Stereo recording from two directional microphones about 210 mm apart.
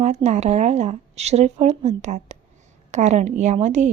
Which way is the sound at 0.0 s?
35° right (ahead or behind).